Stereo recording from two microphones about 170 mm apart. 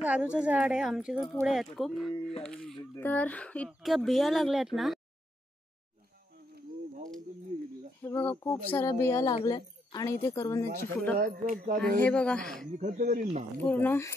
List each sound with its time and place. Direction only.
0.0 s speech: 10° right (ahead or behind)
7.5 s a sound: 45° right (ahead or behind)
8.0 s speech: 10° left (ahead or behind)
11.1 s speech: 50° right (ahead or behind)
12.0 s speech: 5° left (ahead or behind)
12.7 s speech: 45° right (ahead or behind)
13.6 s speech: 10° left (ahead or behind)